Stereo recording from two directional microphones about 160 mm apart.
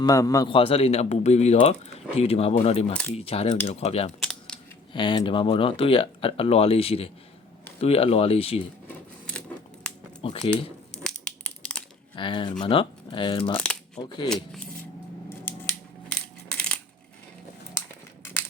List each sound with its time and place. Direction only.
0.0 s a man's voice: 20° left (ahead or behind)
0.5 s speech: 35° left (ahead or behind)
2.9 s speech: 5° left (ahead or behind)
3.2 s speech: 40° left (ahead or behind)
4.2 s a sound: 5° left (ahead or behind)
4.9 s speech: 30° left (ahead or behind)
10.2 s speech: 35° left (ahead or behind)
11.0 s crushing: 5° left (ahead or behind)
12.1 s a man's voice: 30° left (ahead or behind)
16.5 s coin: 5° left (ahead or behind)